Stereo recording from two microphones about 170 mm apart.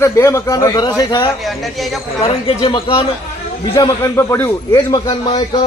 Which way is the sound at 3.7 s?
15° left (ahead or behind).